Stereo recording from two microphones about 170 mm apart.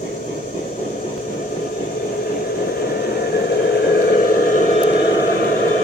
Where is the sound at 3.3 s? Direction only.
75° left (ahead or behind).